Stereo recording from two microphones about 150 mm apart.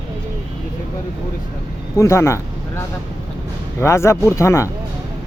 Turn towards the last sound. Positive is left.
turn(degrees=20)  # may be behind; listen again after turning